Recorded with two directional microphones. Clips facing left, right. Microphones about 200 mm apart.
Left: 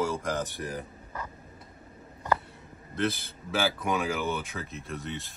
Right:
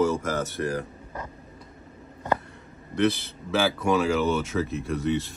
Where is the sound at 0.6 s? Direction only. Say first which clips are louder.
Right 8 dB; 80° right.